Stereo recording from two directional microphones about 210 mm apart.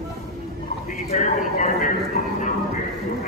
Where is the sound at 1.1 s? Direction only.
35° left (ahead or behind).